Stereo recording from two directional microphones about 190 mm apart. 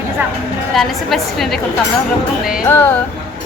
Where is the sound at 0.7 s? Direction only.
Centre (ahead or behind).